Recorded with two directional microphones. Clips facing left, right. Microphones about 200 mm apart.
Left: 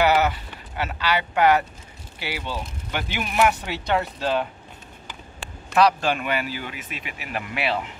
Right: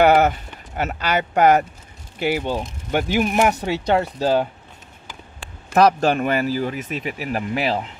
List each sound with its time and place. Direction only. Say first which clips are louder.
0.0 s speech: right 5 dB; 50° right (ahead or behind)
5.8 s speech: right 4 dB; 45° right (ahead or behind)